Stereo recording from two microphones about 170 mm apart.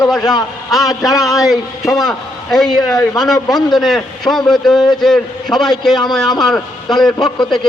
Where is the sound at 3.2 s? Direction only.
Centre (ahead or behind).